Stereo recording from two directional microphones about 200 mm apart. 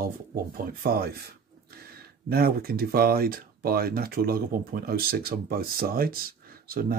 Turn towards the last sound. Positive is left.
turn(degrees=-45)  # may be behind; listen again after turning